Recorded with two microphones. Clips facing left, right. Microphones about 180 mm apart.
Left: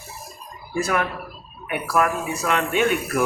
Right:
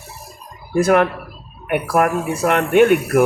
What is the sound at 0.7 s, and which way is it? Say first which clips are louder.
Speech: right 9 dB; 60° right (ahead or behind).